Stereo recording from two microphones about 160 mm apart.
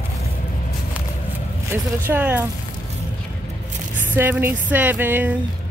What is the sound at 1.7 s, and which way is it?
Speech, 10° right (ahead or behind).